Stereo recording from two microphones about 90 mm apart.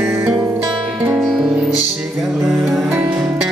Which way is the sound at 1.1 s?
5° right (ahead or behind).